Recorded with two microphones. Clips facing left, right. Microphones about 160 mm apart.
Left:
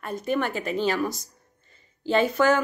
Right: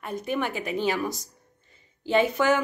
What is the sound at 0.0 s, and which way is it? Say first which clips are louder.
A woman's voice: left 2 dB; 15° right (ahead or behind).